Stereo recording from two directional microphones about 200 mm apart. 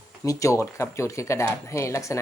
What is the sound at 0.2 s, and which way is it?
Speech, 15° left (ahead or behind).